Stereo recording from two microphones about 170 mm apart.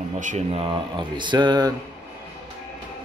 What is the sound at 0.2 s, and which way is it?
Speech, 50° right (ahead or behind).